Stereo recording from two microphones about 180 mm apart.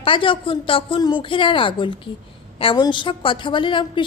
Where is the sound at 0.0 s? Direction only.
30° left (ahead or behind).